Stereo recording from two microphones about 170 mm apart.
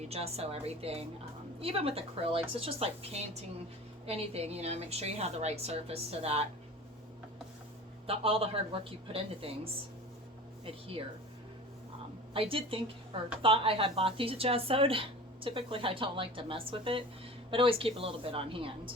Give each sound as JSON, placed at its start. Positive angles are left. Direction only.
{"t": 0.1, "sound": "a woman's voice", "side_deg": -35}
{"t": 8.0, "sound": "a woman's voice", "side_deg": -35}
{"t": 10.7, "sound": "a woman's voice", "side_deg": -35}
{"t": 12.3, "sound": "a woman's voice", "side_deg": -30}